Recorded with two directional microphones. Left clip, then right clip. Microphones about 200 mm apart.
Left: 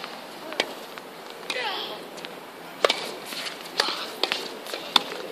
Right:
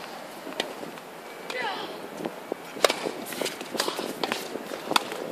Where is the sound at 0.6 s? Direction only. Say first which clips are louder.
Left 4 dB; 30° left (ahead or behind).